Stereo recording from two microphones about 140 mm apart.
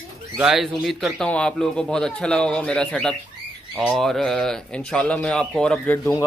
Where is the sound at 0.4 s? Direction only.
5° right (ahead or behind).